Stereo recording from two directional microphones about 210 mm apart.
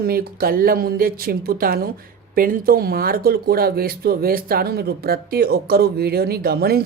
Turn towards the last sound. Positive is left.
turn(degrees=-45)  # may be behind; listen again after turning